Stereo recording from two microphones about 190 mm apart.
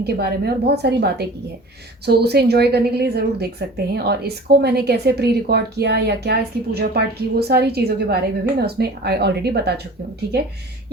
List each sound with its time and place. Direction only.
0.0 s speech: 55° right (ahead or behind)